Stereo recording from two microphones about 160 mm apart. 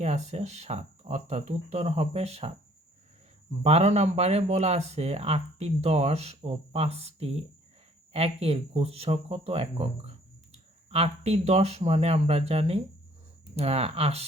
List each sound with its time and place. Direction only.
0.0 s speech: 45° right (ahead or behind)
3.6 s speech: 40° right (ahead or behind)
10.8 s speech: 40° right (ahead or behind)